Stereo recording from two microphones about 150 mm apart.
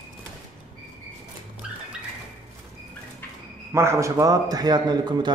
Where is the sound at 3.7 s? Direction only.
20° right (ahead or behind).